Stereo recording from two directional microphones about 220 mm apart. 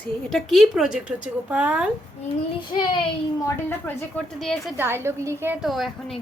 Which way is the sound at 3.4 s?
10° left (ahead or behind).